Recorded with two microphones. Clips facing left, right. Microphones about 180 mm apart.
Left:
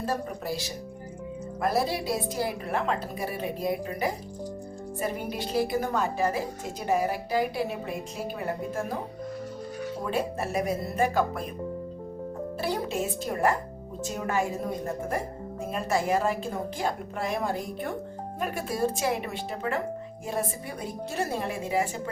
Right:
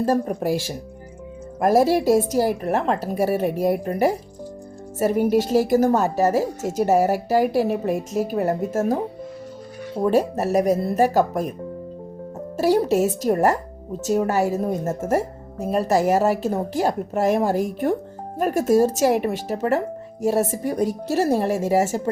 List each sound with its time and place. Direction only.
0.0 s a woman's voice: 45° right (ahead or behind)
1.6 s a woman's voice: 45° right (ahead or behind)
10.1 s speech: 40° right (ahead or behind)
12.9 s a woman's voice: 40° right (ahead or behind)